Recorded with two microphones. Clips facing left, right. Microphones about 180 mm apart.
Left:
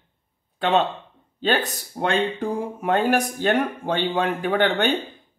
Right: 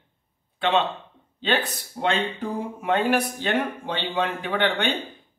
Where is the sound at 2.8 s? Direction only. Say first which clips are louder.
Left 1 dB; 45° left (ahead or behind).